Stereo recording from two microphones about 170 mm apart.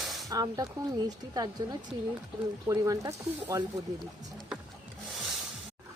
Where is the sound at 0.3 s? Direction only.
20° right (ahead or behind).